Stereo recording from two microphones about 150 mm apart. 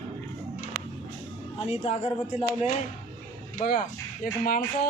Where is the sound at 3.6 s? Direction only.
80° left.